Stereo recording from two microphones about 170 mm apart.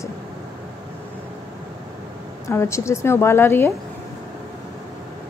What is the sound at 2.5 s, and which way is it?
A woman's voice, 15° left (ahead or behind).